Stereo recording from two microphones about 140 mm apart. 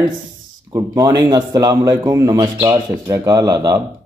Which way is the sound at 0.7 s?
25° right (ahead or behind).